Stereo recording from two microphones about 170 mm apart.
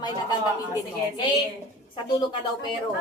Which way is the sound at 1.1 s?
25° left (ahead or behind).